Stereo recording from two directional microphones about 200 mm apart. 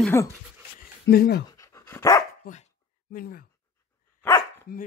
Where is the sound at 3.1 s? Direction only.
45° left (ahead or behind).